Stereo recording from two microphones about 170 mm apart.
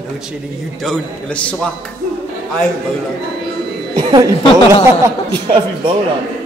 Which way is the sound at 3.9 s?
25° right (ahead or behind).